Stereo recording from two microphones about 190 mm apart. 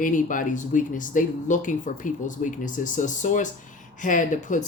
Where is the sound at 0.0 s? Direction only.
45° left (ahead or behind).